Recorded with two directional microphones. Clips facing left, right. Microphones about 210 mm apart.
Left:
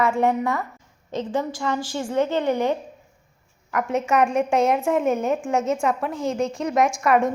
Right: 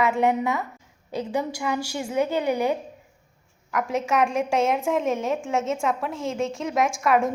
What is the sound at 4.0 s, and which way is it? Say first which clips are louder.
A woman's voice: left 3 dB; centre (ahead or behind).